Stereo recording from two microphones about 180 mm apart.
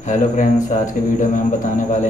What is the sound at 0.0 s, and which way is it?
A man's voice, 45° left (ahead or behind).